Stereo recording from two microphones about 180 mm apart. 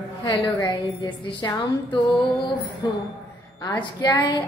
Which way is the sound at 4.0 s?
25° left (ahead or behind).